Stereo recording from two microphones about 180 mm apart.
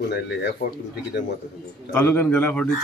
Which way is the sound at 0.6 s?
40° left (ahead or behind).